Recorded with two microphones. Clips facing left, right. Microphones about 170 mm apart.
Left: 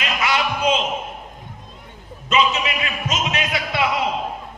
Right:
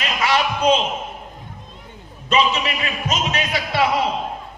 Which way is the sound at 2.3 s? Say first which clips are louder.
Right 1 dB; 35° right (ahead or behind).